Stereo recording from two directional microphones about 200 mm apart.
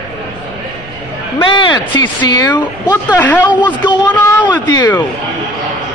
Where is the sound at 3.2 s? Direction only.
10° left (ahead or behind).